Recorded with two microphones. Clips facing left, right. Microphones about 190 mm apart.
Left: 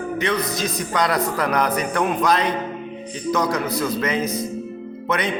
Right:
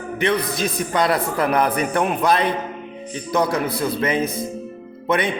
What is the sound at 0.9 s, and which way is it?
A man's voice, 30° right (ahead or behind).